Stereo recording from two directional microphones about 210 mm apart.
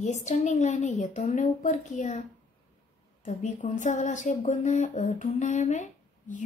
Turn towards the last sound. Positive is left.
turn(degrees=35)  # may be behind; listen again after turning